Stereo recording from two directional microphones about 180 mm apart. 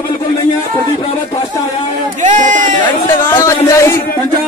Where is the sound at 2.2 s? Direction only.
45° right (ahead or behind).